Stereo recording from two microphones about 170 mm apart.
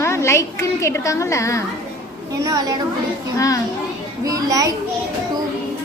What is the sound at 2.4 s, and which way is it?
Speech, 20° right (ahead or behind).